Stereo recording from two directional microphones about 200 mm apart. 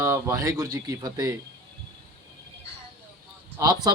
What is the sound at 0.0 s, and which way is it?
Speech, 15° right (ahead or behind).